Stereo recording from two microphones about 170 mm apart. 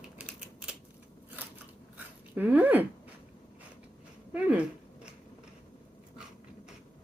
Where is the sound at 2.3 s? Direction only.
10° right (ahead or behind).